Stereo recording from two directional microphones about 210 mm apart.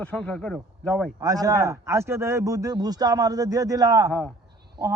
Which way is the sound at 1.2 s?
15° right (ahead or behind).